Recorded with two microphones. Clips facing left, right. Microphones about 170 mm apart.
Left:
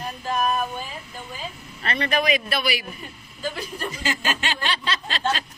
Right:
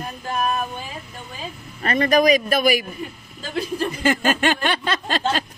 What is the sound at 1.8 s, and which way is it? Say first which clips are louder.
Speech: right 7 dB; 40° right (ahead or behind).